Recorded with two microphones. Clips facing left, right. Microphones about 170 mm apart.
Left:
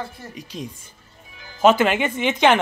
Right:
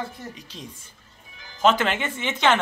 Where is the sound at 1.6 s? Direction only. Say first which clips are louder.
Left 5 dB; 10° left (ahead or behind).